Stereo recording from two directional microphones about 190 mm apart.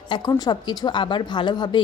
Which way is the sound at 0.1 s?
20° left (ahead or behind).